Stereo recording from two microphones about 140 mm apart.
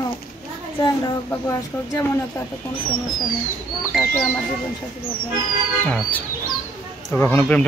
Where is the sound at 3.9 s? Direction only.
Centre (ahead or behind).